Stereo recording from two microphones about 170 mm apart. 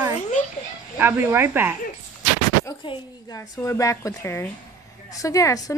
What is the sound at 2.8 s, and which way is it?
Speech, 30° left (ahead or behind).